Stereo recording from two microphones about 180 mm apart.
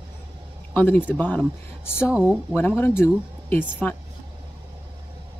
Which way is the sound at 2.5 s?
10° left (ahead or behind).